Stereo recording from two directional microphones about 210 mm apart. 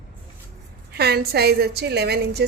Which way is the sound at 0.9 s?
50° right (ahead or behind).